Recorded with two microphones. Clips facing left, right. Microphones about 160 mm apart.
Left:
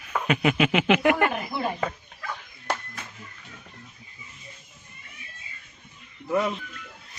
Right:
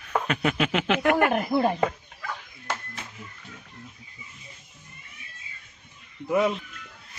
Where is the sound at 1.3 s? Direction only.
45° right (ahead or behind).